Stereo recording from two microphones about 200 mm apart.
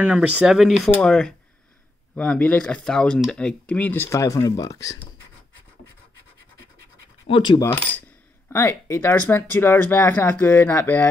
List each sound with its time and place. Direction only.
0.0 s speech: 5° right (ahead or behind); by 4.9 s 15° left (ahead or behind)
7.2 s coin: 25° left (ahead or behind)
8.5 s speech: 10° left (ahead or behind)